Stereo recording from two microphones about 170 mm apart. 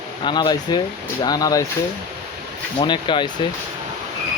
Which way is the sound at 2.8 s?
30° left (ahead or behind).